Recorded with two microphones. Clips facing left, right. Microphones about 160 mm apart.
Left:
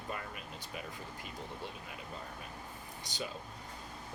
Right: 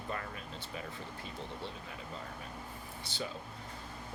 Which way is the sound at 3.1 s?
15° left (ahead or behind).